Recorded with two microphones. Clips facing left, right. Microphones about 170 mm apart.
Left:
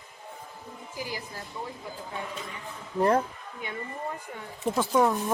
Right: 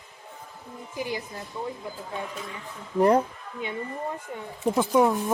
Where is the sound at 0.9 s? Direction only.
25° right (ahead or behind).